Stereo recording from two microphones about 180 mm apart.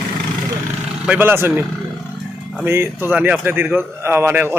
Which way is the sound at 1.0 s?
10° right (ahead or behind).